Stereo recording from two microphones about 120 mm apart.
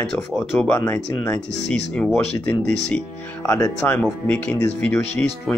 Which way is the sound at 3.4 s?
25° left (ahead or behind).